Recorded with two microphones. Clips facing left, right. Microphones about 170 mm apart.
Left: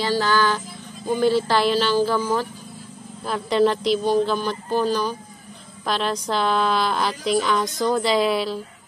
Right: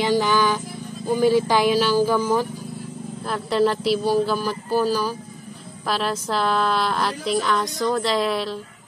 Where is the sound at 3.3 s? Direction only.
Centre (ahead or behind).